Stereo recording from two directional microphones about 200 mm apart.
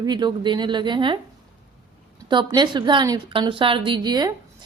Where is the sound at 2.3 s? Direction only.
25° right (ahead or behind).